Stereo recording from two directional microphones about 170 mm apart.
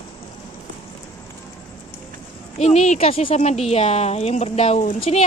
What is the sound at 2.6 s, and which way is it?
Speech, 40° left (ahead or behind).